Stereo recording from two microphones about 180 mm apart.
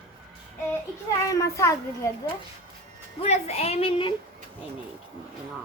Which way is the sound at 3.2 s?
35° left (ahead or behind).